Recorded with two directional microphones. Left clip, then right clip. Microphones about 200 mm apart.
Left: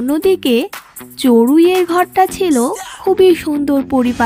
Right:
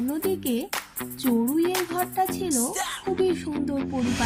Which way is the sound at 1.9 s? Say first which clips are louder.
Left 13 dB; 45° left (ahead or behind).